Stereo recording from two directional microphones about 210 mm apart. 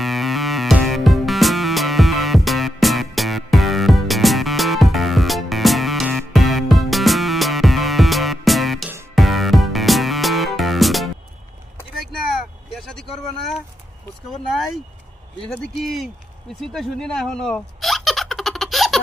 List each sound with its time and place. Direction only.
0.0 s music: centre (ahead or behind)
12.7 s vehicle: 5° left (ahead or behind)
15.5 s speech: centre (ahead or behind)
16.6 s hiccup: centre (ahead or behind)